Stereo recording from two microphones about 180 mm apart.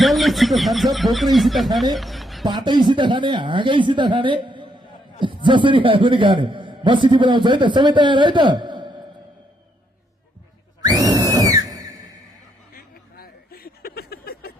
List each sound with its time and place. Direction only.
0.0 s speech: centre (ahead or behind)
2.5 s a man's voice: 25° right (ahead or behind)
10.8 s screaming: 20° right (ahead or behind)
12.7 s a sound: 55° left (ahead or behind)